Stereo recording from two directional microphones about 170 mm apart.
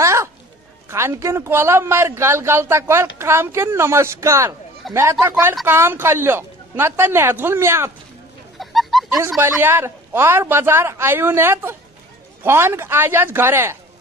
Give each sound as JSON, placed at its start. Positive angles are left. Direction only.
{"t": 0.0, "sound": "a sound", "side_deg": -15}
{"t": 0.8, "sound": "speech", "side_deg": -15}
{"t": 4.8, "sound": "a sound", "side_deg": 0}
{"t": 5.2, "sound": "speech", "side_deg": -15}
{"t": 8.5, "sound": "chicken", "side_deg": 0}
{"t": 9.4, "sound": "speech", "side_deg": -15}